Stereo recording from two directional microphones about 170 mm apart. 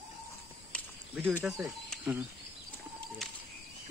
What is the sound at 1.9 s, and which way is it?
Cricket, 5° right (ahead or behind).